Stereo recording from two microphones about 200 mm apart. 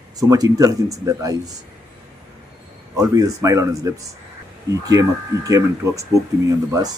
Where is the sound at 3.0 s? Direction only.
15° right (ahead or behind).